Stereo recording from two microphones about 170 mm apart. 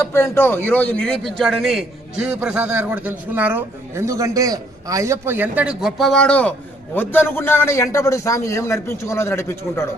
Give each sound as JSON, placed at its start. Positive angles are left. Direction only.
{"t": 0.0, "sound": "a man's voice", "side_deg": 15}